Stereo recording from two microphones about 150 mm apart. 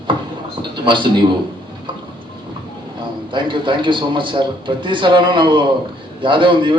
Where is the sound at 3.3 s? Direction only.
35° right (ahead or behind).